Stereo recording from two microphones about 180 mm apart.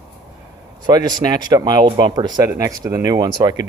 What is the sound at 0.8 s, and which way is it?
Speech, 20° right (ahead or behind).